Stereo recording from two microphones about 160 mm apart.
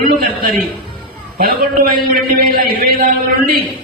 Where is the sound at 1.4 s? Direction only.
65° right (ahead or behind).